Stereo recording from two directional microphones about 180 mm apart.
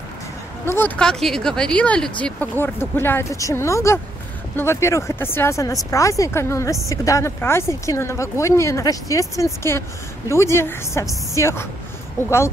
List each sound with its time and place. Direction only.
0.7 s speech: 10° left (ahead or behind)